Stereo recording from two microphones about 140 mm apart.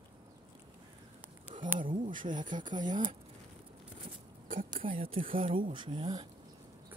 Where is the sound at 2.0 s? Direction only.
70° right (ahead or behind).